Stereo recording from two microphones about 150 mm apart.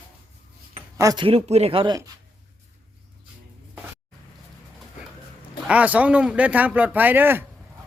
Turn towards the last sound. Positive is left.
turn(degrees=-15)  # may be behind; listen again after turning